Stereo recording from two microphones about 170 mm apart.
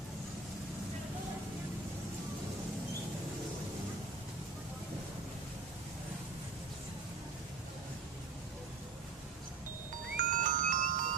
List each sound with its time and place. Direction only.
10.2 s music: 50° right (ahead or behind)